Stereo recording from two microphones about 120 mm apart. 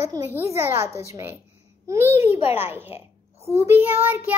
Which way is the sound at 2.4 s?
55° left (ahead or behind).